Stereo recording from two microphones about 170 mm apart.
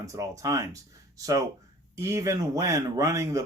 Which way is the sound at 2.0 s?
15° right (ahead or behind).